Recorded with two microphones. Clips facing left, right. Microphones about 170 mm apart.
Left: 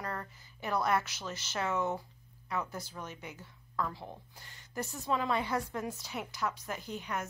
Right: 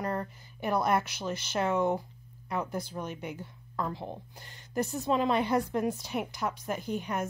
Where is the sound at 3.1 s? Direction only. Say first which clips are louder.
Right 8 dB; 55° right (ahead or behind).